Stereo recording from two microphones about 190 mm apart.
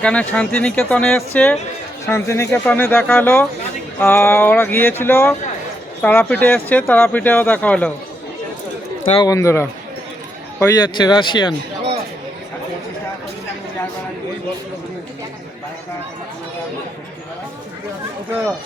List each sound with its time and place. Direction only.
0.0 s speech: 5° left (ahead or behind)
9.1 s speech: 20° left (ahead or behind)
10.9 s speech: 20° left (ahead or behind)